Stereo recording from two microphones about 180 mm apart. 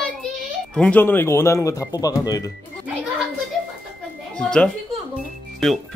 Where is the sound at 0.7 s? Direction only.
5° left (ahead or behind).